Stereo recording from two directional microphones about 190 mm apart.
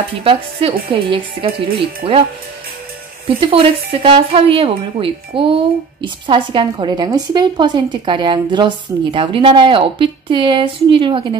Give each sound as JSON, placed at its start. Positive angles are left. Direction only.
{"t": 0.2, "sound": "speech", "side_deg": -30}
{"t": 3.3, "sound": "speech", "side_deg": -30}